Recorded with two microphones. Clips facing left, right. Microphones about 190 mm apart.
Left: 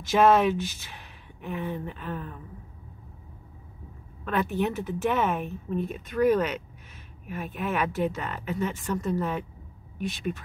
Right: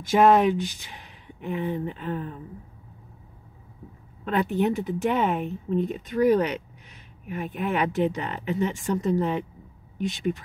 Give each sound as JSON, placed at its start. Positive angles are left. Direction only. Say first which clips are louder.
{"t": 0.0, "sound": "speech", "louder": "right 2 dB", "side_deg": -15}
{"t": 4.2, "sound": "speech", "louder": "right 3 dB", "side_deg": -15}